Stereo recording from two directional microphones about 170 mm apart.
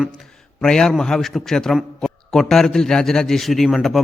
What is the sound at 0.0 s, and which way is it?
A man's voice, centre (ahead or behind).